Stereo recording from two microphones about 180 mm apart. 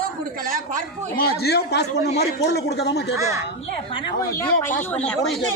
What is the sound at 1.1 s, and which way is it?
Speech, 60° left (ahead or behind).